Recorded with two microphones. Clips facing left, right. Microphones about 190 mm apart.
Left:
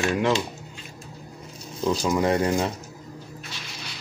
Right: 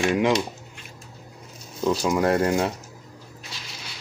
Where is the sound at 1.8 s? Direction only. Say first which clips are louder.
Right 1 dB; centre (ahead or behind).